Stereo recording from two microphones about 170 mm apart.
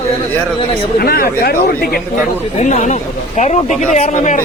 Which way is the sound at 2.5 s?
45° left (ahead or behind).